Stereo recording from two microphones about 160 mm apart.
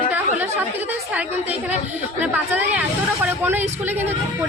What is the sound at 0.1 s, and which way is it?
Chatter, 10° right (ahead or behind).